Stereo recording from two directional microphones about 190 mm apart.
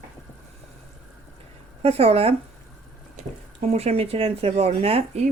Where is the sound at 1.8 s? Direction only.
30° right (ahead or behind).